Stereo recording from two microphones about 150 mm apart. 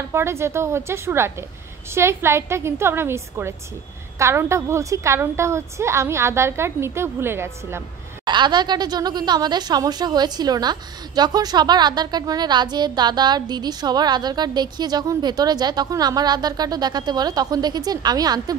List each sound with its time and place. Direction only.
0.1 s a woman's voice: 15° right (ahead or behind)
8.3 s speech: 30° right (ahead or behind)